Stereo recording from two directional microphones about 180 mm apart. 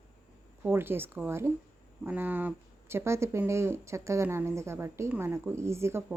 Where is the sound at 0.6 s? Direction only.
10° right (ahead or behind).